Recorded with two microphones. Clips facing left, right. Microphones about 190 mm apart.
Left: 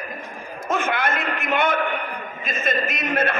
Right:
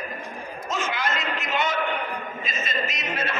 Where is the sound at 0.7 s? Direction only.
55° left (ahead or behind).